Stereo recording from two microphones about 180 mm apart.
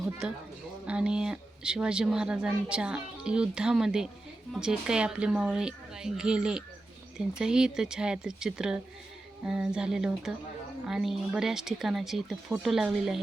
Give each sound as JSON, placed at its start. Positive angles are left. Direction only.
{"t": 0.0, "sound": "a woman's voice", "side_deg": -5}